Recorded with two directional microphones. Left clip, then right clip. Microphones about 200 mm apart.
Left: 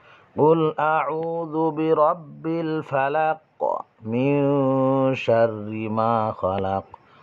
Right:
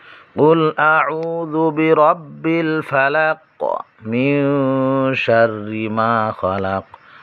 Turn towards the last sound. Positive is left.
turn(degrees=-15)  # may be behind; listen again after turning